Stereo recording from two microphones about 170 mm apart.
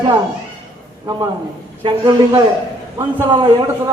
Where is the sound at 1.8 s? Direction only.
25° right (ahead or behind).